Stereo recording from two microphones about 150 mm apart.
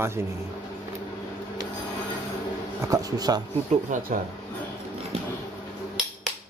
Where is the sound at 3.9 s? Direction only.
60° right (ahead or behind).